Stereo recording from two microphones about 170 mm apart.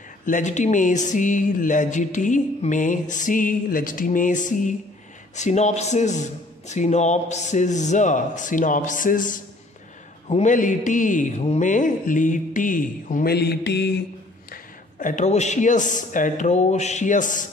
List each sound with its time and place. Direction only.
0.2 s speech: 50° left (ahead or behind)
10.2 s a man's voice: 35° left (ahead or behind)
10.5 s speech: 50° left (ahead or behind); by 13.9 s 80° left
14.5 s speech: 50° left (ahead or behind)